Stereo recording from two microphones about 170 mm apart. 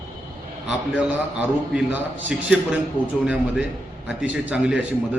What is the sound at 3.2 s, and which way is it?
A man's voice, 5° right (ahead or behind).